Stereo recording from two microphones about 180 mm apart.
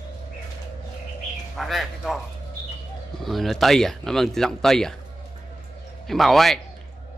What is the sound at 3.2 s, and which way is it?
Speech, centre (ahead or behind).